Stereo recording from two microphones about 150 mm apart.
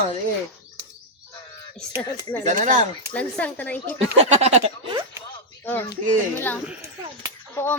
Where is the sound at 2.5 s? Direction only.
55° right (ahead or behind).